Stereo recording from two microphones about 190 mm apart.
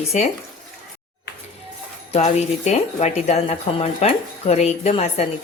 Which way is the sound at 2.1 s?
35° left (ahead or behind).